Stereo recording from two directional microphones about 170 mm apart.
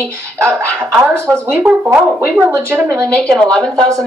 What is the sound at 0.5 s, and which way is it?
Speech, 10° right (ahead or behind).